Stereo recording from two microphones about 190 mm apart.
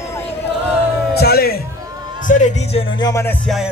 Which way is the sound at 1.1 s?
55° left (ahead or behind).